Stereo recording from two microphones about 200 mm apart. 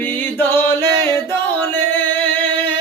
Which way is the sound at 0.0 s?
10° left (ahead or behind).